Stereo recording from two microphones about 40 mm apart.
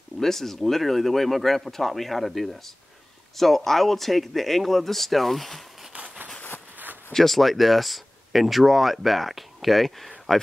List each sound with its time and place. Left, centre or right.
0.2 s speech: centre
5.9 s a sound: right
7.1 s speech: centre